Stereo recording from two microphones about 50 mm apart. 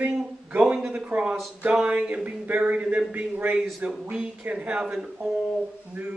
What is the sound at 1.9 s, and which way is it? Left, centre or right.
Speech, right.